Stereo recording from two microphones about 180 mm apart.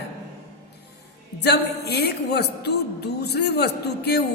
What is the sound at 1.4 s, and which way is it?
Speech, 65° left (ahead or behind).